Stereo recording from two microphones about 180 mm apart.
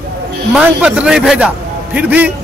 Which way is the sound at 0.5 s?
5° right (ahead or behind).